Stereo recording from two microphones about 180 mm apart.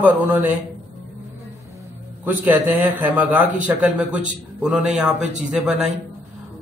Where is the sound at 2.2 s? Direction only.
10° right (ahead or behind).